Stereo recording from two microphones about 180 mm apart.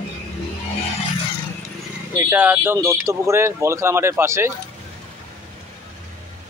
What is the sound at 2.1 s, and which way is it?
Speech, 10° right (ahead or behind).